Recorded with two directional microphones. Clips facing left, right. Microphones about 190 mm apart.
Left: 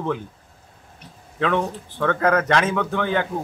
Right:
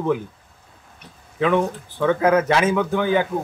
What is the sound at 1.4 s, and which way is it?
Speech, 5° right (ahead or behind).